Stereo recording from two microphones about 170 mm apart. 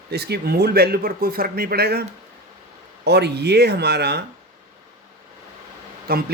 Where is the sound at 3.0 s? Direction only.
75° right (ahead or behind).